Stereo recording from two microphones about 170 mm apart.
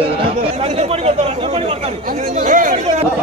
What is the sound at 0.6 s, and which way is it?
Chatter, 35° right (ahead or behind).